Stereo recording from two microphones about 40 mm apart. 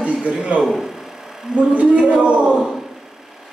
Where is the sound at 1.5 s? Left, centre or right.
Right.